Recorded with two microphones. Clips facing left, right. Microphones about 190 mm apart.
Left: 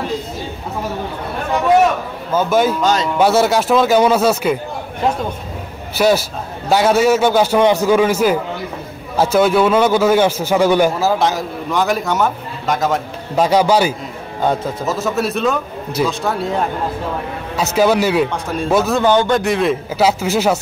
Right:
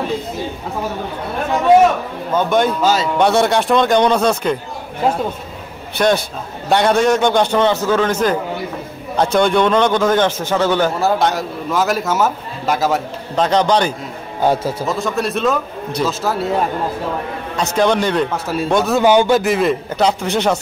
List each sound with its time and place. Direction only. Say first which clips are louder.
2.3 s a man's voice: left 1 dB; 5° left (ahead or behind)
2.8 s speech: even; 5° right (ahead or behind)
3.2 s a man's voice: left 2 dB; 5° left (ahead or behind)
5.9 s a man's voice: left 1 dB; 5° left (ahead or behind)
13.4 s a man's voice: left 2 dB; 10° left (ahead or behind)
14.4 s a man's voice: right 1 dB; 5° right (ahead or behind)
17.7 s a man's voice: left 2 dB; 5° left (ahead or behind)
18.3 s a man's voice: even; 5° right (ahead or behind)
19.0 s a man's voice: right 2 dB; 10° right (ahead or behind); by 20.5 s 5° left (ahead or behind)